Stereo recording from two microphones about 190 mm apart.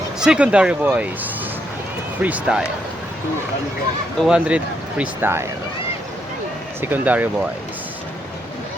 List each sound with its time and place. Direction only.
0.2 s speech: 5° right (ahead or behind)
2.2 s speech: 5° right (ahead or behind)
4.2 s speech: 5° right (ahead or behind)
6.8 s speech: 10° right (ahead or behind)